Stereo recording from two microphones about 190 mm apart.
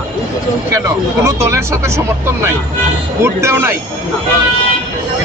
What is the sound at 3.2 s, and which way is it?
Speech, 10° right (ahead or behind).